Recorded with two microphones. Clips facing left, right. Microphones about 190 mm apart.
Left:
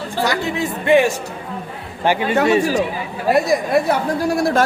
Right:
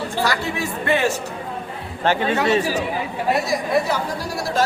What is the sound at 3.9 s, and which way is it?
Speech, 55° left (ahead or behind).